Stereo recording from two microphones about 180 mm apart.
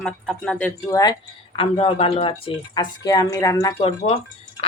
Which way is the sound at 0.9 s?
20° left (ahead or behind).